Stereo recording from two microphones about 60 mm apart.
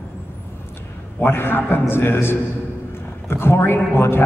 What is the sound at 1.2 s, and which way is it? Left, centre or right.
A man's voice, left.